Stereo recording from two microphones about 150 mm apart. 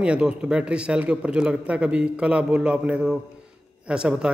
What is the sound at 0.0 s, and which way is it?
A man's voice, 5° right (ahead or behind).